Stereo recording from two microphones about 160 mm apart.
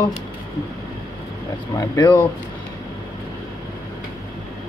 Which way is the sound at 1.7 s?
25° left (ahead or behind).